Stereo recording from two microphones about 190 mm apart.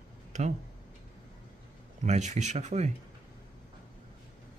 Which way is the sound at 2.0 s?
40° right (ahead or behind).